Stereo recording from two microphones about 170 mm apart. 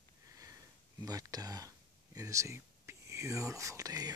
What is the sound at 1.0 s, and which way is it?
Speech, 20° right (ahead or behind).